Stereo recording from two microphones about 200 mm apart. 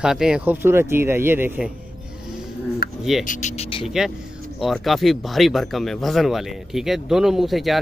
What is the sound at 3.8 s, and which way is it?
Speech, centre (ahead or behind).